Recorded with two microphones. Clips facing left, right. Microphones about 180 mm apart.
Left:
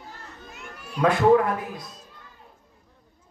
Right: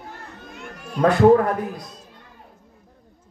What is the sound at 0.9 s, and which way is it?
Speech, 40° right (ahead or behind).